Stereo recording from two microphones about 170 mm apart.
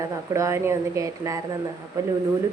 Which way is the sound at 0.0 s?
15° right (ahead or behind).